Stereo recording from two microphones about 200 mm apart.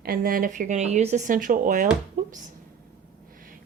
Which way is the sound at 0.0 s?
45° right (ahead or behind).